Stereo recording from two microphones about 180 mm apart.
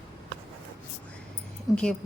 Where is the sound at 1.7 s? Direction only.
5° left (ahead or behind).